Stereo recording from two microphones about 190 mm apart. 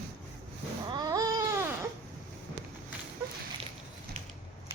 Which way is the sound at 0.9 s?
20° right (ahead or behind).